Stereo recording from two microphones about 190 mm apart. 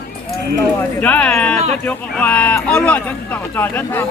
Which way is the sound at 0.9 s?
10° left (ahead or behind).